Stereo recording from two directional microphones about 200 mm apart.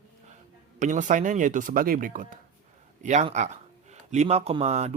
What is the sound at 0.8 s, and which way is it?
Speech, 40° right (ahead or behind).